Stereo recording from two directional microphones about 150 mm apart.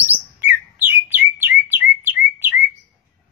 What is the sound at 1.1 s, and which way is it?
Bird, 15° right (ahead or behind).